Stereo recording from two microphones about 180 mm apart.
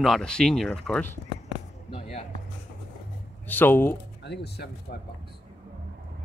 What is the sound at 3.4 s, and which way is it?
Speech, 10° left (ahead or behind).